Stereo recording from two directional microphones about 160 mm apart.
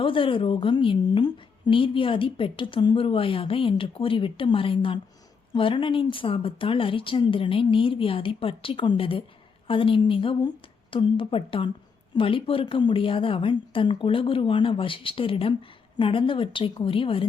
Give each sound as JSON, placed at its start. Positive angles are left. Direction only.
{"t": 0.0, "sound": "a woman's voice", "side_deg": 35}